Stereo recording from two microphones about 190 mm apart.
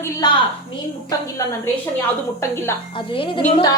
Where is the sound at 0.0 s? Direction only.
20° left (ahead or behind).